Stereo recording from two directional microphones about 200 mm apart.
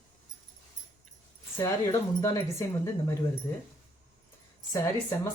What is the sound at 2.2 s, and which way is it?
Speech, 15° left (ahead or behind).